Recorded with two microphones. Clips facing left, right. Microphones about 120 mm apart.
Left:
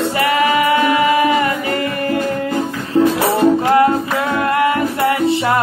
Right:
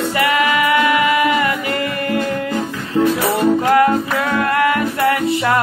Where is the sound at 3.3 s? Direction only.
25° left (ahead or behind).